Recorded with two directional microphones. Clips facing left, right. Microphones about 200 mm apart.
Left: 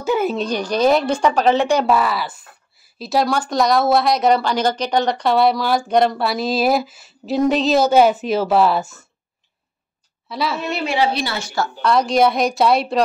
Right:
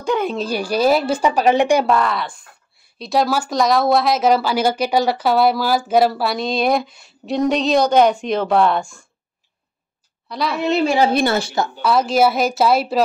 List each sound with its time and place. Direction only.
0.0 s speech: 5° left (ahead or behind)
0.5 s a woman's voice: 5° right (ahead or behind)
1.9 s speech: 5° left (ahead or behind)
10.2 s a woman's voice: centre (ahead or behind)
10.9 s a woman's voice: 45° right (ahead or behind)
11.8 s speech: 5° right (ahead or behind)